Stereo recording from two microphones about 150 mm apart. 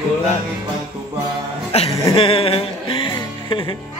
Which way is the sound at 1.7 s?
40° left (ahead or behind).